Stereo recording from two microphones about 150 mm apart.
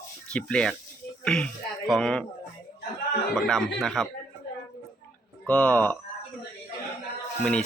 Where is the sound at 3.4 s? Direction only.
5° left (ahead or behind).